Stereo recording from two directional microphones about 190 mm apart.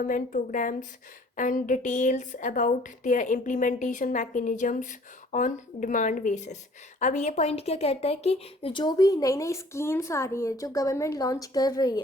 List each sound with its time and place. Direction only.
0.0 s a woman's voice: 45° left (ahead or behind); by 12.0 s 20° left (ahead or behind)